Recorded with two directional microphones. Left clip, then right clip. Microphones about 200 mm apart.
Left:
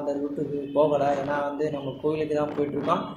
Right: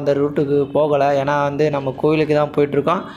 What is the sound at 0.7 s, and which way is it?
Speech, 35° right (ahead or behind).